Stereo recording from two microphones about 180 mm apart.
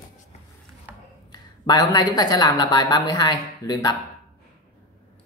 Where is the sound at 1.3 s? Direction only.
20° left (ahead or behind).